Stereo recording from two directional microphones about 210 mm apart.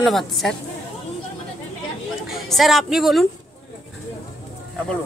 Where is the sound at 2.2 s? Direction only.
Centre (ahead or behind).